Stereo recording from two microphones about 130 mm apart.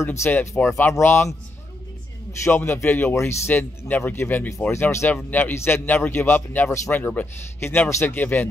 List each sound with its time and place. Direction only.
0.0 s speech: 20° left (ahead or behind)
2.4 s speech: 20° left (ahead or behind)